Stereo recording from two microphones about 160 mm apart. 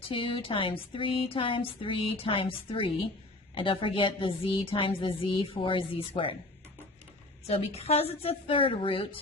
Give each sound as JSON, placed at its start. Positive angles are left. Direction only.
{"t": 0.1, "sound": "a woman's voice", "side_deg": 35}
{"t": 7.4, "sound": "a woman's voice", "side_deg": 40}